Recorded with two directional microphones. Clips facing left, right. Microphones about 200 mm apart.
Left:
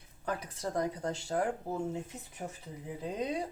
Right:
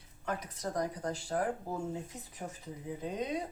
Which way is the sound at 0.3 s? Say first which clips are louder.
Left 1 dB; 30° left (ahead or behind).